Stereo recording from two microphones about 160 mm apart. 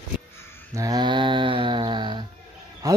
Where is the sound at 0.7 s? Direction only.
25° right (ahead or behind).